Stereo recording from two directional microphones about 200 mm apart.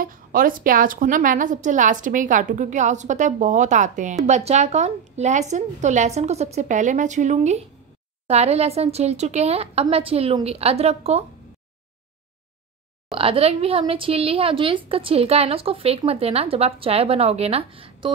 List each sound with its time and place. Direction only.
0.0 s a woman's voice: 45° right (ahead or behind)
13.1 s a woman's voice: 30° right (ahead or behind)